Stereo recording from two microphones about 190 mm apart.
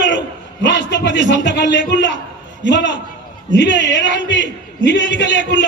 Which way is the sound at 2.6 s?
70° left (ahead or behind).